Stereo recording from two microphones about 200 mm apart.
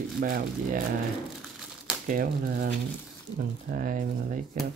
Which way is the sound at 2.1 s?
45° right (ahead or behind).